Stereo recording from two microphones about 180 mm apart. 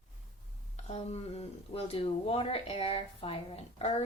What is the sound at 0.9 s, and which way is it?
Speech, 35° left (ahead or behind).